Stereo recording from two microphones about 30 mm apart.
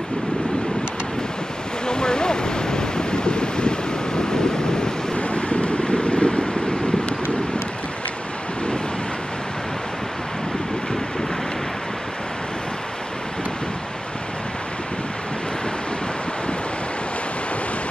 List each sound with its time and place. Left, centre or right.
1.9 s waves: left
5.1 s vehicle: left